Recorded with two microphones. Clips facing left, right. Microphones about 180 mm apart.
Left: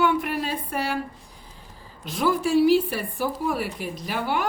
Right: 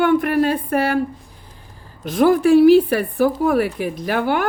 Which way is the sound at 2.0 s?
50° right (ahead or behind).